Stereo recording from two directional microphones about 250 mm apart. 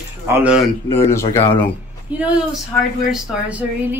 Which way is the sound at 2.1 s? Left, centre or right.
Centre.